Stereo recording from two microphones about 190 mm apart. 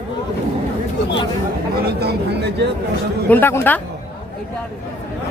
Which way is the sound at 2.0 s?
60° right (ahead or behind).